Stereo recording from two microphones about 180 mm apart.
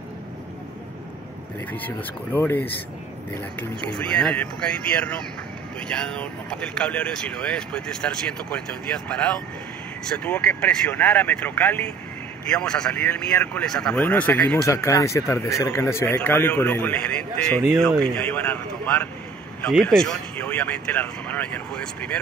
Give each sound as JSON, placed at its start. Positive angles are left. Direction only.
{"t": 1.7, "sound": "speech", "side_deg": 10}